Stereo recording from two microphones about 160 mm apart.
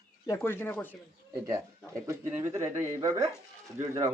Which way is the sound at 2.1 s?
15° right (ahead or behind).